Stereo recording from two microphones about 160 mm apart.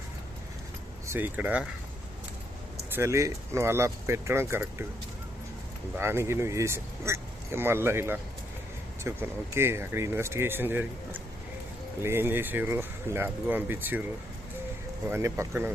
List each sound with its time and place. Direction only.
1.0 s speech: 15° right (ahead or behind)
2.9 s speech: 15° right (ahead or behind)
6.0 s speech: 15° right (ahead or behind)
15.0 s speech: 15° right (ahead or behind)